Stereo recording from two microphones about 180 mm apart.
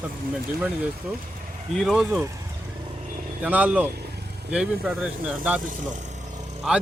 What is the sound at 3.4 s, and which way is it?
Speech, 10° right (ahead or behind).